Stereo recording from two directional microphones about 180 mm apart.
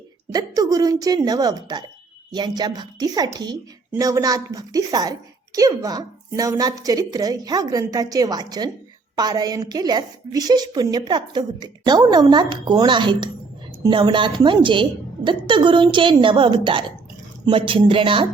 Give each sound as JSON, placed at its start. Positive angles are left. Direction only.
{"t": 0.3, "sound": "a woman's voice", "side_deg": -20}